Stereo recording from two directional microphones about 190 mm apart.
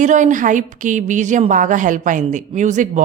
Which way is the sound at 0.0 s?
40° right (ahead or behind).